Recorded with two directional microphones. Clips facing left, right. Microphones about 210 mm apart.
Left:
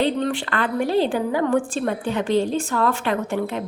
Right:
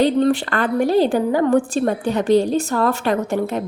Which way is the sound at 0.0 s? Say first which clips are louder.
Right 6 dB; 40° right (ahead or behind).